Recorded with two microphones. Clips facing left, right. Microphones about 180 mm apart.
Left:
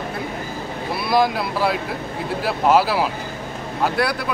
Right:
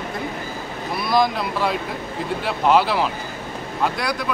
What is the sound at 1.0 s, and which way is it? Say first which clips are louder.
Speech: left 1 dB; 5° left (ahead or behind).